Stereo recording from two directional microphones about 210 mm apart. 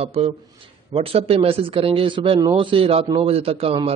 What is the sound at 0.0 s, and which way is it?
Speech, 25° right (ahead or behind).